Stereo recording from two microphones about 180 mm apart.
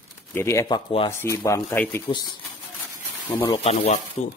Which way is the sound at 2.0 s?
25° left (ahead or behind).